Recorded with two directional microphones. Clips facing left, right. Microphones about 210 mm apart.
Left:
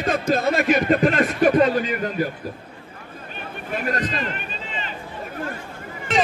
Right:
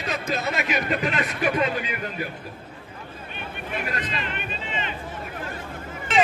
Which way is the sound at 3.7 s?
40° left (ahead or behind).